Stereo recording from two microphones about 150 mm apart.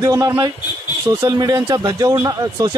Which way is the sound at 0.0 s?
20° right (ahead or behind).